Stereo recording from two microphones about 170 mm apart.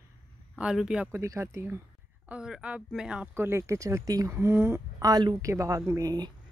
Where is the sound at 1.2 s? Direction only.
15° right (ahead or behind).